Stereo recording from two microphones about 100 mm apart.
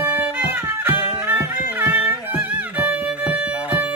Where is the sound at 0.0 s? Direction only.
20° right (ahead or behind).